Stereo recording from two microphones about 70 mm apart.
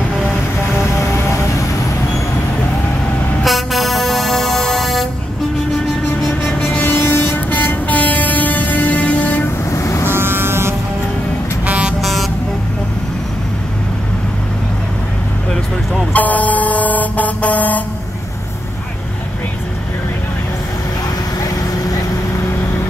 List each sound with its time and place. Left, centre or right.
0.9 s music: left
3.4 s vehicle: centre
6.4 s train: left
9.7 s vehicle: left
10.0 s vehicle: right
11.6 s vehicle: centre
12.0 s vehicle: centre
16.1 s vehicle: left